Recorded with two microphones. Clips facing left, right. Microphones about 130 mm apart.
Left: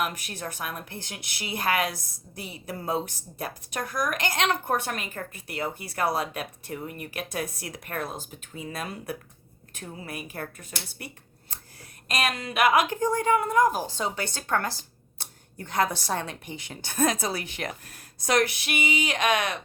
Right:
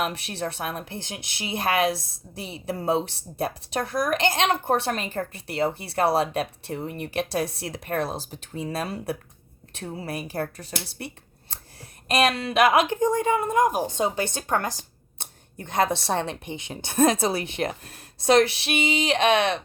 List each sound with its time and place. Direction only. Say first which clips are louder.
0.0 s a woman's voice: right 3 dB; 30° right (ahead or behind)